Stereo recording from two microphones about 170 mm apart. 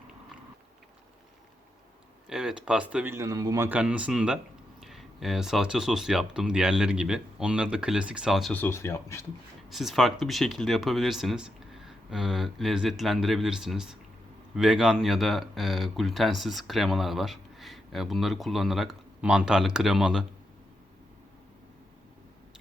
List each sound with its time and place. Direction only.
2.3 s speech: 5° right (ahead or behind)
8.5 s speech: 15° left (ahead or behind)
9.6 s speech: centre (ahead or behind)